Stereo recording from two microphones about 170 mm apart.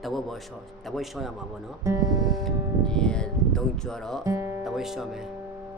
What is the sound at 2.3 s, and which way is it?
Speech, centre (ahead or behind).